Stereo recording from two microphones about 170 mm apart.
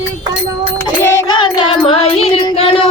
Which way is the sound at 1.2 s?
30° left (ahead or behind).